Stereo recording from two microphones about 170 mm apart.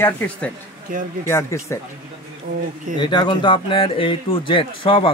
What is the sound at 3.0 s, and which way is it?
Speech, 25° left (ahead or behind).